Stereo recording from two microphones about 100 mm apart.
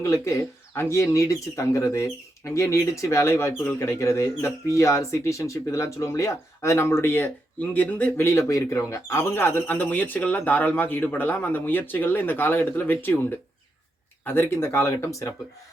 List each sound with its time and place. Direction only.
0.0 s speech: 30° left (ahead or behind); by 8.2 s 15° left (ahead or behind)
8.2 s speech: 30° left (ahead or behind)
14.3 s speech: 20° left (ahead or behind)